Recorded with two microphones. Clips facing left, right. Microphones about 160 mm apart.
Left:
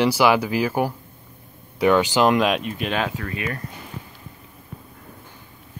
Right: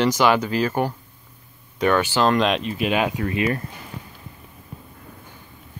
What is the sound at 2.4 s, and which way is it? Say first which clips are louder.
Speech: right 1 dB; 5° left (ahead or behind).